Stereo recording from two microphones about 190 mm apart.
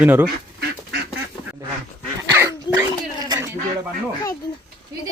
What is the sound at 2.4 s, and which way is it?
Dog, 20° right (ahead or behind).